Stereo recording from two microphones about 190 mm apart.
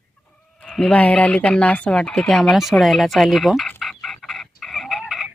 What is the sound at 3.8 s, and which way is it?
Fowl, centre (ahead or behind).